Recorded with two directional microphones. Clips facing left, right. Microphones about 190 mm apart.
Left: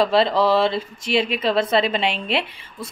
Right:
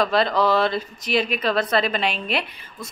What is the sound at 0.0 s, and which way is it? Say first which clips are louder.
A woman's voice: left 2 dB; 25° left (ahead or behind).